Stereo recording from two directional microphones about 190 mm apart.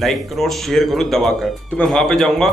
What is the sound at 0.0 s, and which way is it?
A man's voice, centre (ahead or behind).